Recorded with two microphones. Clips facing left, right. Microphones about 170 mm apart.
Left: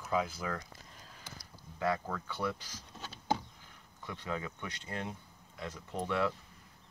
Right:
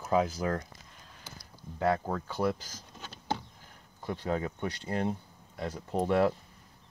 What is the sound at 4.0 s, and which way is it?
Speech, 40° right (ahead or behind).